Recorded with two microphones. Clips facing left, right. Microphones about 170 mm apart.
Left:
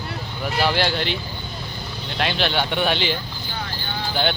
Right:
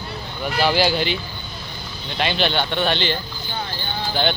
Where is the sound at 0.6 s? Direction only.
Centre (ahead or behind).